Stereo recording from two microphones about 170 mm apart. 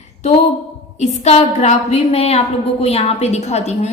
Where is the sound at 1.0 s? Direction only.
40° left (ahead or behind).